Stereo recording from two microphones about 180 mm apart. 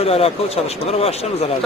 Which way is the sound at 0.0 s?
35° left (ahead or behind).